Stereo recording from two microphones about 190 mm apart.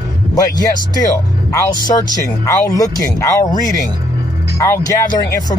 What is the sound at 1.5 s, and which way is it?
Speech, 15° left (ahead or behind).